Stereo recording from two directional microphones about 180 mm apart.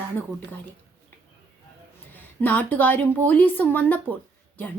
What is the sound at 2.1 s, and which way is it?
A woman's voice, 10° left (ahead or behind).